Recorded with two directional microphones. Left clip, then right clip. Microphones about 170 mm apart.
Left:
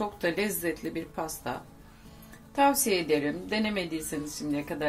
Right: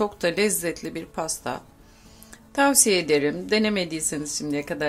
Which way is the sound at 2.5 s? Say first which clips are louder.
Right 4 dB; 40° right (ahead or behind).